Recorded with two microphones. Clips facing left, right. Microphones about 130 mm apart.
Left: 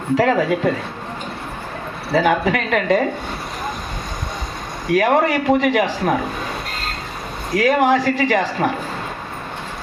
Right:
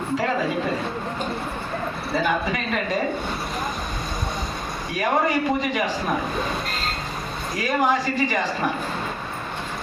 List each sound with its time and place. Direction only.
0.2 s a man's voice: 90° left
2.1 s speech: 85° left
4.9 s a man's voice: 75° left (ahead or behind)
7.5 s a man's voice: 65° left (ahead or behind); by 8.7 s 80° left